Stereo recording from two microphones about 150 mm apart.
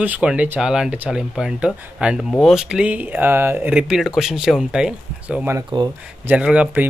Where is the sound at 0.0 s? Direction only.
10° right (ahead or behind).